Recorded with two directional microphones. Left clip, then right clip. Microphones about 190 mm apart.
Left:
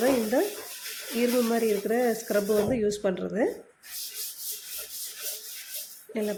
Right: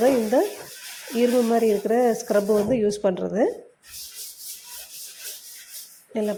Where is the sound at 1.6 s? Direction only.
10° right (ahead or behind).